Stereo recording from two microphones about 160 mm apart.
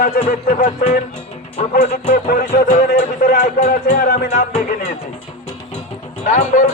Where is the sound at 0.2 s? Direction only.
80° left.